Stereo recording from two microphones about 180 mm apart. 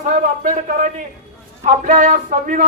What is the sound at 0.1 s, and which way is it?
Speech, 50° right (ahead or behind).